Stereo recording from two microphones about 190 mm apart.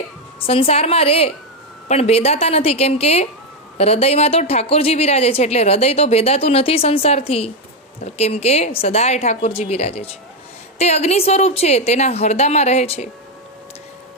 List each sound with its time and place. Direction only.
0.3 s a woman's voice: 30° left (ahead or behind)